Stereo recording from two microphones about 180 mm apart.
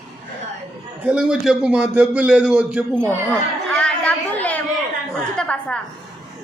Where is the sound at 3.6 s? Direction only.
5° left (ahead or behind).